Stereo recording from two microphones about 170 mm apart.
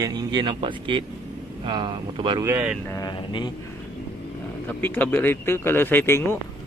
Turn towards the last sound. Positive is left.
turn(degrees=15)  # may be behind; listen again after turning